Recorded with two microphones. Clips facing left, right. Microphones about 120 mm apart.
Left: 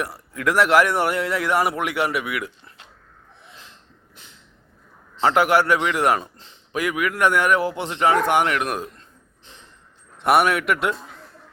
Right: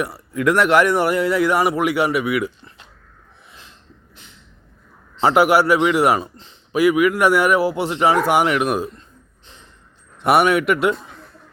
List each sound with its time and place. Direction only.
0.0 s speech: centre (ahead or behind)
5.2 s speech: 10° right (ahead or behind)
10.2 s speech: centre (ahead or behind)